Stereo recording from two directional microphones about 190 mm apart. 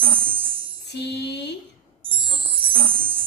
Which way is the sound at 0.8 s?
60° left (ahead or behind).